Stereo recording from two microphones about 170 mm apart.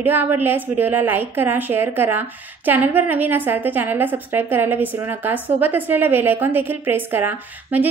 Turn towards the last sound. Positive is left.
turn(degrees=-10)  # may be behind; listen again after turning